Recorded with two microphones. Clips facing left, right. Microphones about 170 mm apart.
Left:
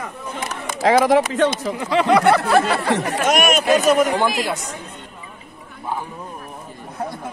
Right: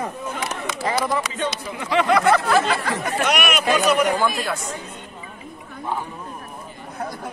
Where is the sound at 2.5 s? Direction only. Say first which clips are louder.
Left 3 dB; 75° left (ahead or behind).